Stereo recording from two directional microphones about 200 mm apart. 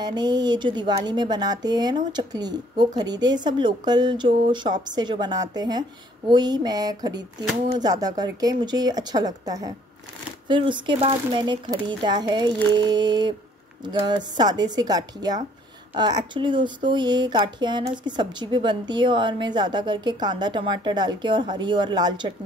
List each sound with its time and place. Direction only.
0.0 s speech: 20° right (ahead or behind)